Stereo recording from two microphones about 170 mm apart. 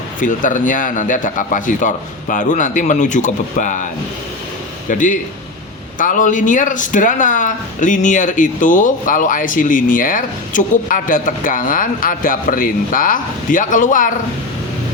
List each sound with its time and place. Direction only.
0.2 s speech: 50° left (ahead or behind)
4.9 s speech: 50° left (ahead or behind)